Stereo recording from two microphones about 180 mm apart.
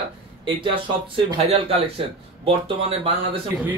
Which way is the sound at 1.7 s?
30° right (ahead or behind).